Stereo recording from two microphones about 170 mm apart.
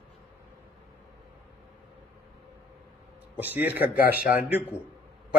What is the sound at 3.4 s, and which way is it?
Speech, 10° right (ahead or behind).